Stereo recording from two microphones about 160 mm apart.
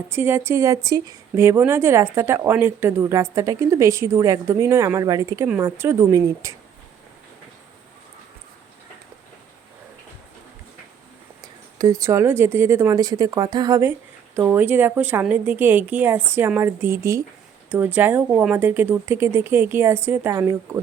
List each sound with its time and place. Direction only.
0.1 s a woman's voice: 15° right (ahead or behind)
11.8 s a woman's voice: 20° right (ahead or behind)